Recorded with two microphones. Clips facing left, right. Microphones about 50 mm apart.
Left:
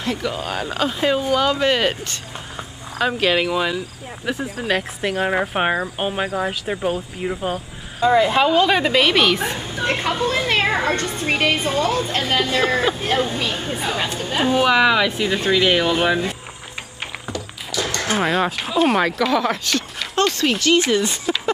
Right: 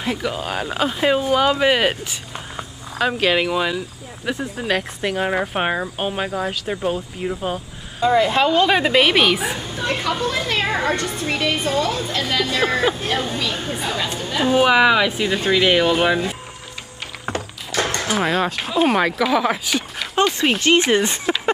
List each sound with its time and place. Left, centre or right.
0.0 s speech: centre
9.6 s a woman's voice: centre
13.6 s a woman's voice: centre
13.9 s speech: left
14.5 s speech: centre
17.3 s a sound: right
18.2 s speech: centre
20.3 s speech: right